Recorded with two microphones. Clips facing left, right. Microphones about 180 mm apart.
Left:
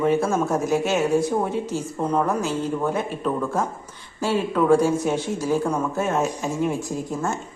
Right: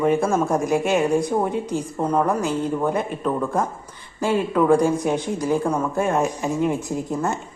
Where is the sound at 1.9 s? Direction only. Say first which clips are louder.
Right 2 dB; 10° right (ahead or behind).